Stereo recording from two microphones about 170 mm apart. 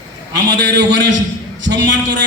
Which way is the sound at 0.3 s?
90° right.